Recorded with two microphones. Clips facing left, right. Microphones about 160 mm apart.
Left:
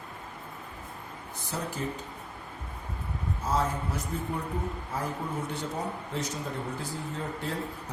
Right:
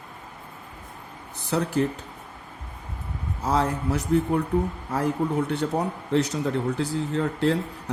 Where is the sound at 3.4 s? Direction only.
70° right (ahead or behind).